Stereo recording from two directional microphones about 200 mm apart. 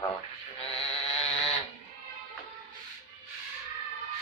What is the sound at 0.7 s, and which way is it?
Vehicle, 30° left (ahead or behind).